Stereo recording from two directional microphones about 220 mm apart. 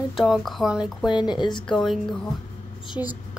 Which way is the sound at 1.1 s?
20° left (ahead or behind).